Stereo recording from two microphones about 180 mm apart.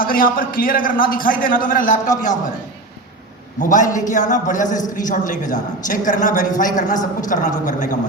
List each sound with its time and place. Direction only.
0.0 s speech: 50° left (ahead or behind)
3.6 s speech: 45° left (ahead or behind)